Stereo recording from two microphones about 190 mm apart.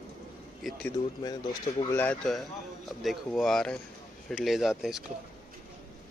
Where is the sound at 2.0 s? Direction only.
5° left (ahead or behind).